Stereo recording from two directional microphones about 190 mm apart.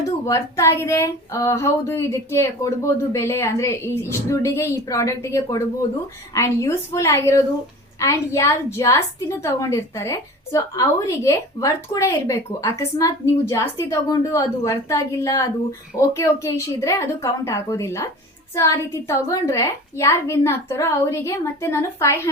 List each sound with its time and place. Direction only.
0.3 s a woman's voice: 15° left (ahead or behind)